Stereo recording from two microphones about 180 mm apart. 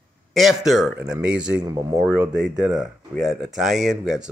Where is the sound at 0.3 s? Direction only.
Centre (ahead or behind).